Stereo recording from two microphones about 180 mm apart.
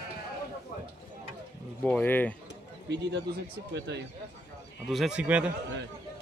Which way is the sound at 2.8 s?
70° right (ahead or behind).